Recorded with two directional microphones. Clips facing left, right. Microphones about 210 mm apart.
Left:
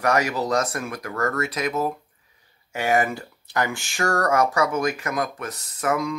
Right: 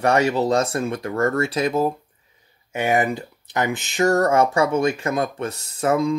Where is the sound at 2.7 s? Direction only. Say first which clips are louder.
Right 2 dB; 20° right (ahead or behind).